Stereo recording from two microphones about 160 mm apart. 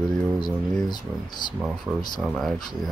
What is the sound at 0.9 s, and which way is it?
Speech, 25° left (ahead or behind).